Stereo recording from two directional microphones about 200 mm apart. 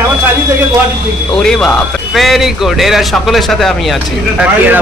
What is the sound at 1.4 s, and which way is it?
Speech, 5° left (ahead or behind).